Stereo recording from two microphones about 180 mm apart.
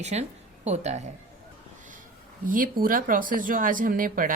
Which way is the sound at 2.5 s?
50° right (ahead or behind).